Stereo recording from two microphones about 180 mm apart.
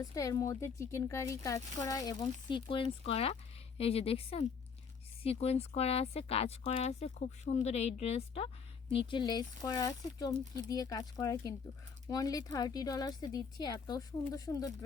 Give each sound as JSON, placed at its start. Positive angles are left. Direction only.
{"t": 0.0, "sound": "speech", "side_deg": 20}